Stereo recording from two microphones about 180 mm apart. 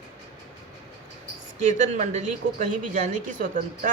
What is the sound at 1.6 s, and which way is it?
Speech, 40° right (ahead or behind).